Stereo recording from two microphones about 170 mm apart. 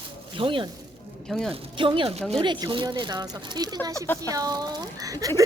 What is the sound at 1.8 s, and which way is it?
A woman's voice, 30° right (ahead or behind).